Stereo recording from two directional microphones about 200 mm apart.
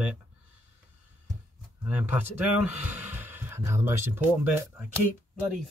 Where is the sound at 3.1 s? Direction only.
10° right (ahead or behind).